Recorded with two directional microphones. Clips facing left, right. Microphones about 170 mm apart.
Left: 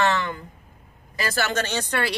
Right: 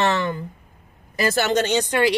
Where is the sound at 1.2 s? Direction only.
20° right (ahead or behind).